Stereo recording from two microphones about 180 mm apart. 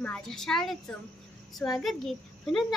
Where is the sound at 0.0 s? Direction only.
5° left (ahead or behind).